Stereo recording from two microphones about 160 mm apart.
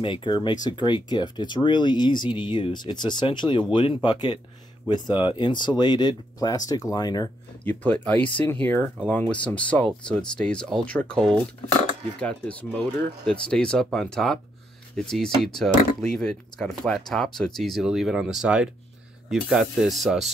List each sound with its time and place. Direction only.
0.0 s speech: 30° left (ahead or behind)
7.6 s speech: 10° left (ahead or behind)